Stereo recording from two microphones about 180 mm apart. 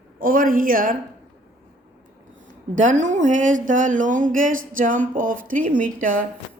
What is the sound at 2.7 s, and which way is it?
Speech, 45° right (ahead or behind).